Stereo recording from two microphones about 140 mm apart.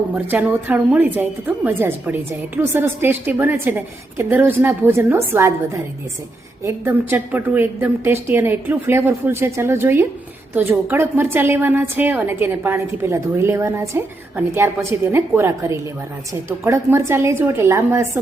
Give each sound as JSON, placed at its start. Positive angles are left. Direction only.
{"t": 0.3, "sound": "a woman's voice", "side_deg": -15}